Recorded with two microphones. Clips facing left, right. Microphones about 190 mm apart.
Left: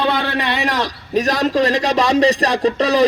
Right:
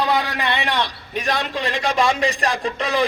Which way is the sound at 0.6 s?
40° left (ahead or behind).